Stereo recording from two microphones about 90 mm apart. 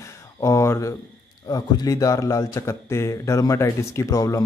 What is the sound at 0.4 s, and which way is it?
A man's voice, 35° left (ahead or behind).